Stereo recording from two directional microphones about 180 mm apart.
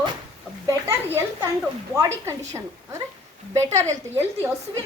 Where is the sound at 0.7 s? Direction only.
15° right (ahead or behind).